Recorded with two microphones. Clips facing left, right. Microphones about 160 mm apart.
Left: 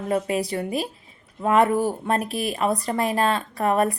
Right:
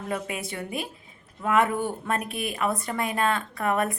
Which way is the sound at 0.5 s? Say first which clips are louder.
Left 6 dB; 30° left (ahead or behind).